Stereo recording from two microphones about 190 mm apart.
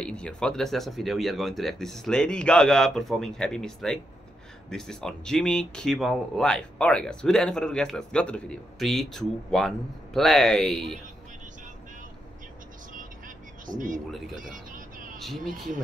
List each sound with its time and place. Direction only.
0.0 s speech: 5° left (ahead or behind)
13.7 s speech: 45° right (ahead or behind)
14.1 s speech: centre (ahead or behind)
14.4 s speech: 45° right (ahead or behind)
15.1 s speech: centre (ahead or behind)